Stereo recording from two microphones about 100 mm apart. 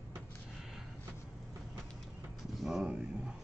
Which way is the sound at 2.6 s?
5° right (ahead or behind).